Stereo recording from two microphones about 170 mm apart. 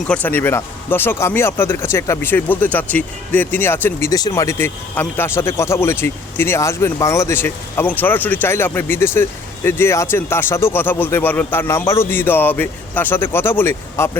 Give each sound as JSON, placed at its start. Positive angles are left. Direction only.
{"t": 0.1, "sound": "speech", "side_deg": 10}